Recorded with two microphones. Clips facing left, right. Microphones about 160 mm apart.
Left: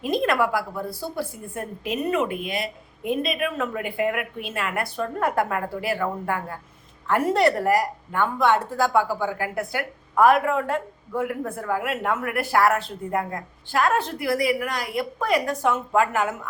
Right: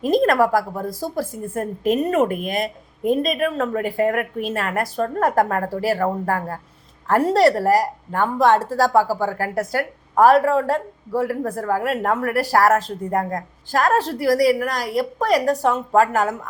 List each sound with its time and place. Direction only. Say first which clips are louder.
0.0 s speech: right 6 dB; 40° right (ahead or behind)